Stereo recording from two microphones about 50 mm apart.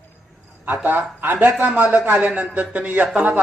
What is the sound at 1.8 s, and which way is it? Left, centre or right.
A man's voice, right.